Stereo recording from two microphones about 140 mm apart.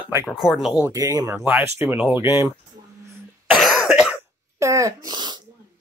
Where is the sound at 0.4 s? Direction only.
5° right (ahead or behind).